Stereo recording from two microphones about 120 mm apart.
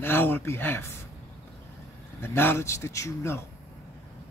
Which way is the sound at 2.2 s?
20° left (ahead or behind).